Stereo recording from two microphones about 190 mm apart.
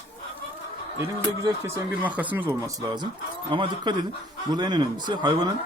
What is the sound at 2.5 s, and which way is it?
Speech, 25° right (ahead or behind).